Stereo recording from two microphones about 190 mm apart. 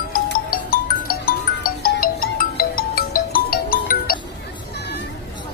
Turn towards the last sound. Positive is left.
turn(degrees=50)  # may be behind; listen again after turning